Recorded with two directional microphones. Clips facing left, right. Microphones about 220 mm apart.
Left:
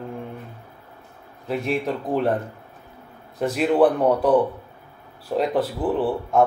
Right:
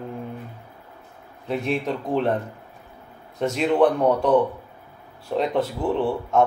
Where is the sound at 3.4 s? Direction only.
5° left (ahead or behind).